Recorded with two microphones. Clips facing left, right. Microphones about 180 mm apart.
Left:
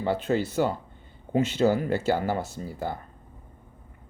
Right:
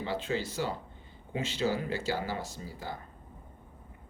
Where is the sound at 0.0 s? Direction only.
55° left (ahead or behind).